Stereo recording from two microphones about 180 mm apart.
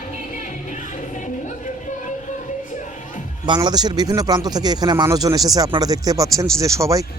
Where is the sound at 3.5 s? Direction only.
25° right (ahead or behind).